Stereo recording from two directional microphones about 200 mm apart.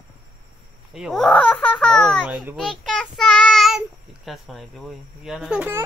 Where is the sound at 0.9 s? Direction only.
Centre (ahead or behind).